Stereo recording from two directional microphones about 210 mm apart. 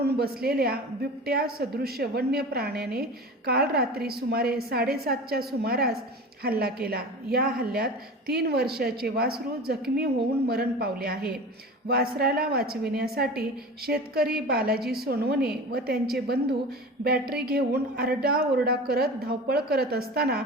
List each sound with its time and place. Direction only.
0.0 s a woman's voice: 50° right (ahead or behind)